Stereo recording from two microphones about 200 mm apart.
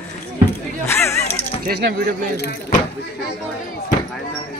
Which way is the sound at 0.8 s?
15° left (ahead or behind).